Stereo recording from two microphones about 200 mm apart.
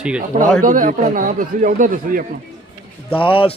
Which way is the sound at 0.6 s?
40° right (ahead or behind).